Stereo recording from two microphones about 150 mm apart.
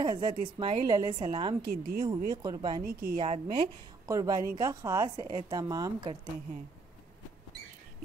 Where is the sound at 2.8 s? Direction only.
90° right.